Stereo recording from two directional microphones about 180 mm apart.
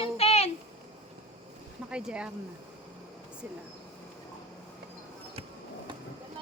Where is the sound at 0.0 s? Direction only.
35° left (ahead or behind).